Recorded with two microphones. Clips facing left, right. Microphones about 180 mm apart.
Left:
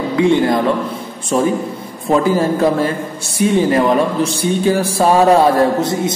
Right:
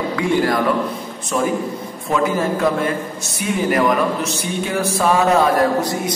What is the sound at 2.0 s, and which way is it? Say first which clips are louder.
A man's voice: left 5 dB; 30° left (ahead or behind).